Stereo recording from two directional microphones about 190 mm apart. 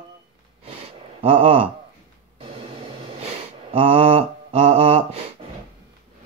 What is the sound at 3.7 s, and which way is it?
Mantra, 30° right (ahead or behind).